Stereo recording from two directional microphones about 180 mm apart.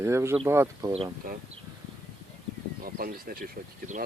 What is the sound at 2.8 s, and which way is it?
Speech, 55° right (ahead or behind).